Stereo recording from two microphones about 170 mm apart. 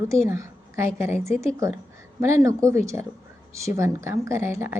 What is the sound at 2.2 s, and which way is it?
A woman's voice, 15° right (ahead or behind).